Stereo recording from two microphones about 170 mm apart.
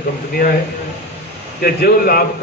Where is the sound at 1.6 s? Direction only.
65° left (ahead or behind).